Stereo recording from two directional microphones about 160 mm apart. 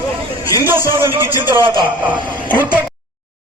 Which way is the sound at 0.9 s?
15° right (ahead or behind).